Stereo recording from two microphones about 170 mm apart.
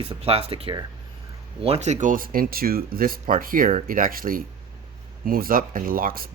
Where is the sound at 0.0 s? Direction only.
35° right (ahead or behind).